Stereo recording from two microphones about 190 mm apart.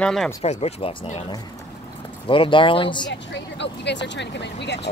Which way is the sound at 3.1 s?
65° left (ahead or behind).